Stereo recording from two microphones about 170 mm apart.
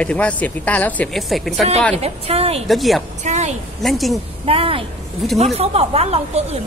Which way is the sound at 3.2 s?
45° right (ahead or behind).